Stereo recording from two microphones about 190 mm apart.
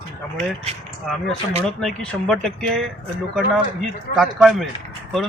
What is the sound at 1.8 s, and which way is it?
Speech, 5° left (ahead or behind).